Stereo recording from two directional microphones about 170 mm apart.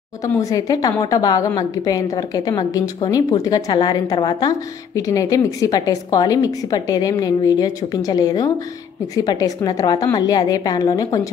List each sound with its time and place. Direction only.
0.3 s a woman's voice: 20° left (ahead or behind)